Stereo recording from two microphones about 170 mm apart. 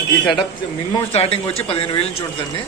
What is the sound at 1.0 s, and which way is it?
Speech, 35° left (ahead or behind).